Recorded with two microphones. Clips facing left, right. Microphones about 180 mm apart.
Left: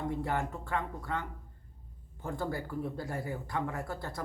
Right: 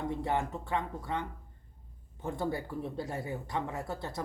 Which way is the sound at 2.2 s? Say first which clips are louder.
Right 2 dB; 20° right (ahead or behind).